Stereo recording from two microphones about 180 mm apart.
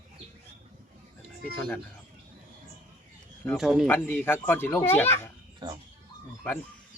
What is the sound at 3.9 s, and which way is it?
Speech, 10° left (ahead or behind).